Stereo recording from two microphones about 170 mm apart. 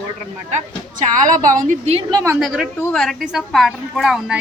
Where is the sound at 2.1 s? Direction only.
15° right (ahead or behind).